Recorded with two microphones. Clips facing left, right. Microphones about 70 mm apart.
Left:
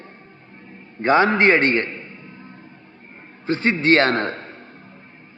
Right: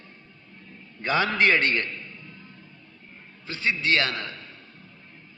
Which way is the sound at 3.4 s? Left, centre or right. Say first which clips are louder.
Left 8 dB; left.